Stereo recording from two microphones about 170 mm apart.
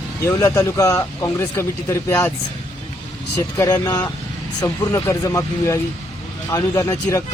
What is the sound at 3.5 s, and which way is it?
Speech, 20° left (ahead or behind).